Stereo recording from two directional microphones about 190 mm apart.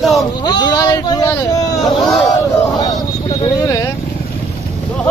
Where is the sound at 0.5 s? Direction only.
20° left (ahead or behind).